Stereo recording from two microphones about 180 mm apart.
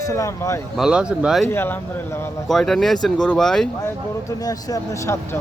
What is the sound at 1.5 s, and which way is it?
Speech, 15° left (ahead or behind).